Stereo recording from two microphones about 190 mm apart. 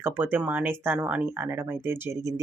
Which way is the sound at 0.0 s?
10° right (ahead or behind).